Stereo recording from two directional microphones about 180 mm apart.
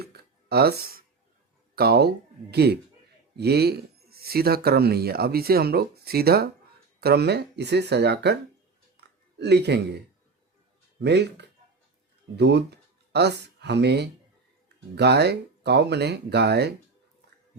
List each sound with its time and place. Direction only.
0.0 s a sound: 60° right (ahead or behind)
1.7 s speech: 60° right (ahead or behind)
9.4 s speech: 70° right (ahead or behind)
11.0 s speech: 70° right (ahead or behind)